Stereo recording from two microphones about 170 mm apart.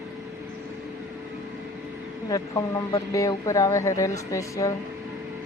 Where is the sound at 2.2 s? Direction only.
20° left (ahead or behind).